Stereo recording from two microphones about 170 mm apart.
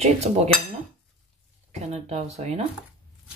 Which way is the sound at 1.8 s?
40° right (ahead or behind).